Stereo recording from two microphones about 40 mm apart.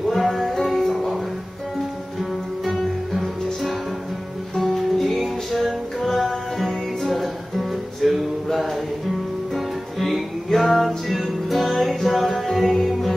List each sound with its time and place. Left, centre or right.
0.1 s music: centre
2.6 s guitar: centre
4.6 s music: centre